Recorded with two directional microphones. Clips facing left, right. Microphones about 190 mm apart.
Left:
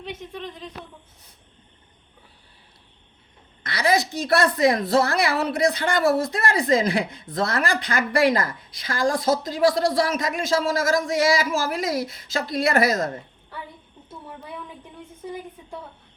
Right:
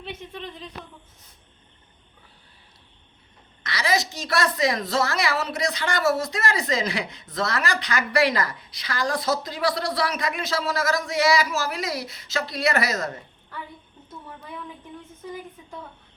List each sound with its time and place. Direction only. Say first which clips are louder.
3.6 s a woman's voice: left 3 dB; 55° left (ahead or behind)